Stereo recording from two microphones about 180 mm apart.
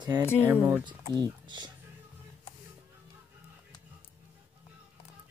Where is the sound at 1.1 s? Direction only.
25° right (ahead or behind).